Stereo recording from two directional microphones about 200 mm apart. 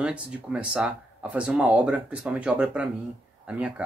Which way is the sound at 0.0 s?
5° right (ahead or behind).